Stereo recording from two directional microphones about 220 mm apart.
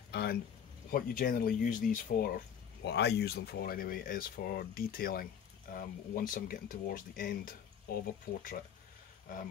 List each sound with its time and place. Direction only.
0.1 s speech: 45° left (ahead or behind)